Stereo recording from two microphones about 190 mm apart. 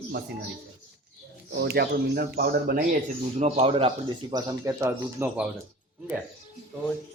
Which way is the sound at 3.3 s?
35° right (ahead or behind).